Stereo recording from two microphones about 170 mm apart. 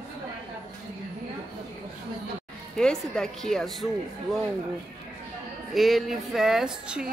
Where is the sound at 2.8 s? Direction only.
5° left (ahead or behind).